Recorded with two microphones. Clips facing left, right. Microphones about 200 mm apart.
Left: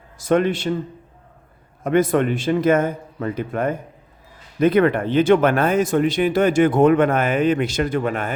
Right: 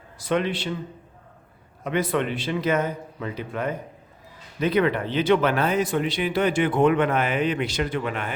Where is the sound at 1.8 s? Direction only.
45° left (ahead or behind).